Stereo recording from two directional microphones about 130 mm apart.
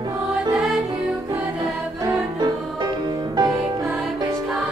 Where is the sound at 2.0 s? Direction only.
30° right (ahead or behind).